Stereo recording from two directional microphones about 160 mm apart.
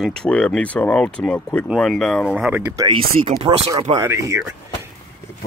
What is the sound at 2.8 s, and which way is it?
Speech, 25° right (ahead or behind).